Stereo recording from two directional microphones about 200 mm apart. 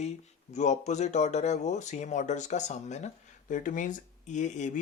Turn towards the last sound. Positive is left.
turn(degrees=35)  # may be behind; listen again after turning